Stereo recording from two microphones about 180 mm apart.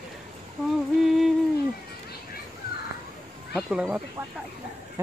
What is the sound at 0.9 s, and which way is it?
Music, centre (ahead or behind).